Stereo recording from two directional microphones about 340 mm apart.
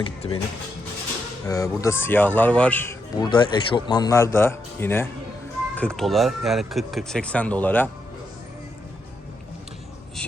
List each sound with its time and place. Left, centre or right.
0.0 s speech: centre
1.5 s speech: centre